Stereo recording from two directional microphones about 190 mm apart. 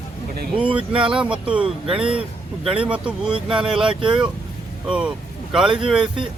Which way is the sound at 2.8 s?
5° right (ahead or behind).